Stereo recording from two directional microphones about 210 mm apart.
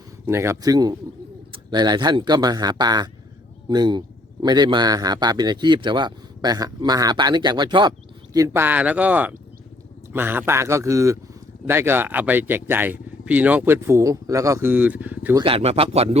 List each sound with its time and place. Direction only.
0.3 s a man's voice: 15° right (ahead or behind)
15.4 s a man's voice: 30° right (ahead or behind)